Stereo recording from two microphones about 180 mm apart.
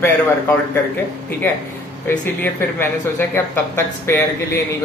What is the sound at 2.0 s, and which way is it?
Speech, 10° left (ahead or behind).